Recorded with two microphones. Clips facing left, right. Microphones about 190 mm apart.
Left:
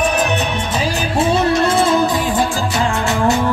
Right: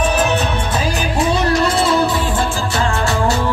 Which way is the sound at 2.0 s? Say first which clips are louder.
Left 1 dB; 15° left (ahead or behind).